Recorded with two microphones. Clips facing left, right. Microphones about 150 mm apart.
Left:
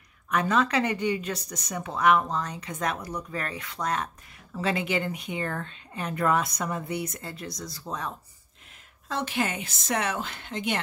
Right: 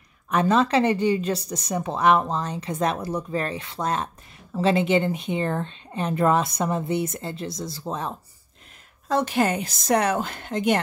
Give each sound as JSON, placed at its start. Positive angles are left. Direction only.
{"t": 0.3, "sound": "speech", "side_deg": -30}
{"t": 9.1, "sound": "a woman's voice", "side_deg": -40}